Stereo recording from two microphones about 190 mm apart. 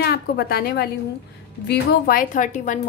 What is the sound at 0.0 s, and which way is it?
A woman's voice, 55° left (ahead or behind).